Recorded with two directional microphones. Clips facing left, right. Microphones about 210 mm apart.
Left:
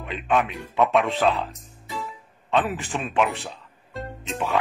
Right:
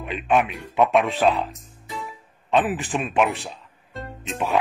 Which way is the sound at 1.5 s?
Centre (ahead or behind).